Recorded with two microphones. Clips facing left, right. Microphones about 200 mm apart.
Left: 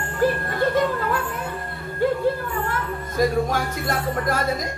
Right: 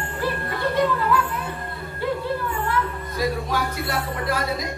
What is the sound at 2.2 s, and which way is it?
Music, 45° left (ahead or behind).